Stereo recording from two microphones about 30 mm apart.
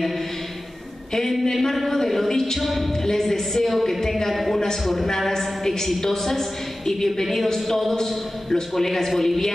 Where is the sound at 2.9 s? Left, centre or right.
Centre.